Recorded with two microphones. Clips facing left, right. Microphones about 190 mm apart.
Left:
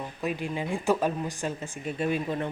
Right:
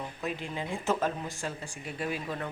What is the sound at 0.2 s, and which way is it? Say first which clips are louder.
Speech: left 6 dB; 15° left (ahead or behind).